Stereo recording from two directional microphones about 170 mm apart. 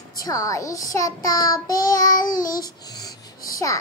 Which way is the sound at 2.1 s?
55° left (ahead or behind).